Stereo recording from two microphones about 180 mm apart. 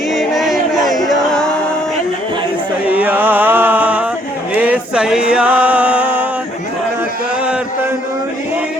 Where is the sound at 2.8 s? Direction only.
10° right (ahead or behind).